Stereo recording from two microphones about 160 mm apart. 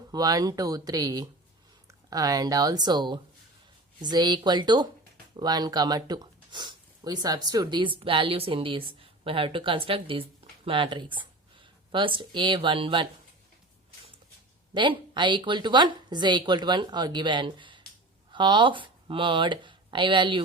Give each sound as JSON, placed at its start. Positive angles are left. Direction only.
{"t": 0.1, "sound": "a woman's voice", "side_deg": -25}
{"t": 14.7, "sound": "a woman's voice", "side_deg": -30}